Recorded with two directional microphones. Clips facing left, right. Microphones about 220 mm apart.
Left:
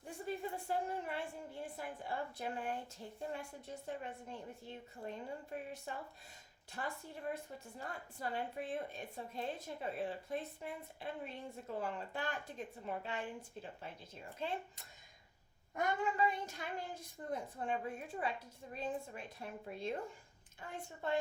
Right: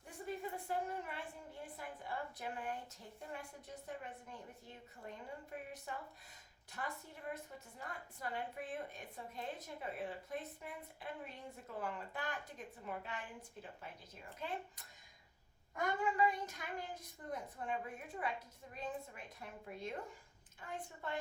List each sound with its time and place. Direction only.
0.0 s a woman's voice: 30° left (ahead or behind)